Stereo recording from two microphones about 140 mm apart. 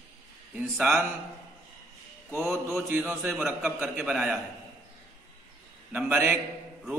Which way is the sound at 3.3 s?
Centre (ahead or behind).